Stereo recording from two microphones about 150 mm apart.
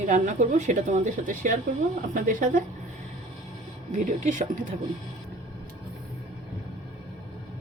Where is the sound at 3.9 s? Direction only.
55° right (ahead or behind).